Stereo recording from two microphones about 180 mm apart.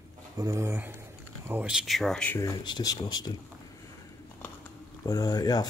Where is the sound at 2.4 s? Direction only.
20° left (ahead or behind).